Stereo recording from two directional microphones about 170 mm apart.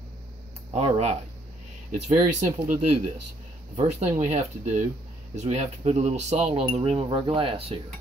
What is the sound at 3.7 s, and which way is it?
Speech, 40° right (ahead or behind).